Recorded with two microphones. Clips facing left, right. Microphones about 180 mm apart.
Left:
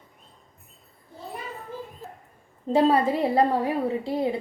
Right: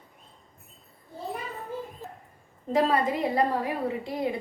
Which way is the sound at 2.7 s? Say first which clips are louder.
Left 4 dB; 30° left (ahead or behind).